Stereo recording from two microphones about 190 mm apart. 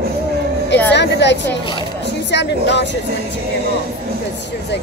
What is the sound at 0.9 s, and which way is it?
Speech, 65° left (ahead or behind).